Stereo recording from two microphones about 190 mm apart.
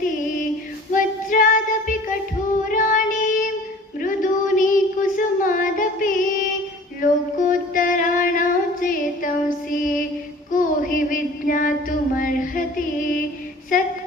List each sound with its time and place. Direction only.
0.9 s child singing: 45° left (ahead or behind)
4.0 s a sound: 45° left (ahead or behind)
10.5 s child singing: 45° left (ahead or behind)